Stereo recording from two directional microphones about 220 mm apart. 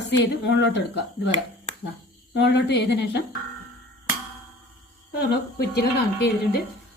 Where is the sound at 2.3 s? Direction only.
50° left (ahead or behind).